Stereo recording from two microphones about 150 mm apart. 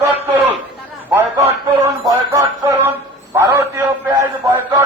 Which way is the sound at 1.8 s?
20° right (ahead or behind).